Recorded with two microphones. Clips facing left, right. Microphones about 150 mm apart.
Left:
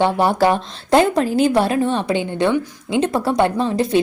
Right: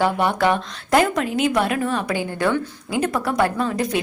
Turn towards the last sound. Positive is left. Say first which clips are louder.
# left 3 dB
turn(degrees=25)  # may be behind; listen again after turning